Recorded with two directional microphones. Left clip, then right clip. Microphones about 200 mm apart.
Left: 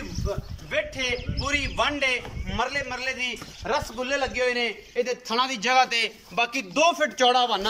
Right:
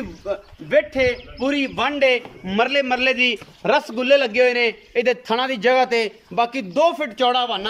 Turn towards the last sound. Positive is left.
turn(degrees=-10)  # may be behind; listen again after turning